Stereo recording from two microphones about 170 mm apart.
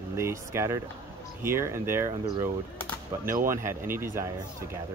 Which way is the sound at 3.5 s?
15° right (ahead or behind).